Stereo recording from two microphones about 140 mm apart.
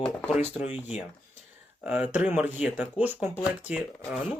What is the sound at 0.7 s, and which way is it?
Speech, 10° right (ahead or behind).